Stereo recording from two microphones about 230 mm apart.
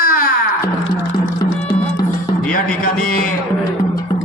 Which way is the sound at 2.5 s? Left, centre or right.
Left.